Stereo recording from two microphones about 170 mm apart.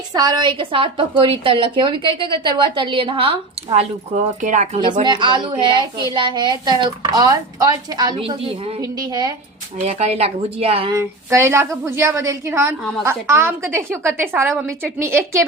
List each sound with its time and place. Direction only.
0.1 s a woman's voice: 25° right (ahead or behind); by 4.8 s 45° right (ahead or behind)
4.8 s speech: 25° right (ahead or behind)
9.7 s a woman's voice: 40° right (ahead or behind)
10.9 s a woman's voice: 15° right (ahead or behind)